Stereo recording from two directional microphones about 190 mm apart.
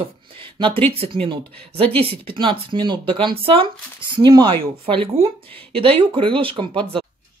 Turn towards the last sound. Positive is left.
turn(degrees=-30)  # may be behind; listen again after turning